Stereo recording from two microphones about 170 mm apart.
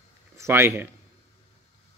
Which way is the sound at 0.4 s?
15° right (ahead or behind).